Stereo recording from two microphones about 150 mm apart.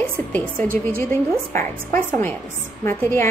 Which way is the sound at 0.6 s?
70° right (ahead or behind).